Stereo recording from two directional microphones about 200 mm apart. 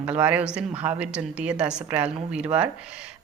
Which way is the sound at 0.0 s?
5° right (ahead or behind).